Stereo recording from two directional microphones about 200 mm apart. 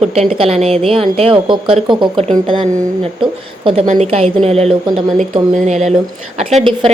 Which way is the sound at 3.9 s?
35° right (ahead or behind).